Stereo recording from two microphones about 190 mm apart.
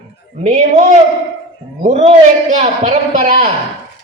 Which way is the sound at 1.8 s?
35° right (ahead or behind).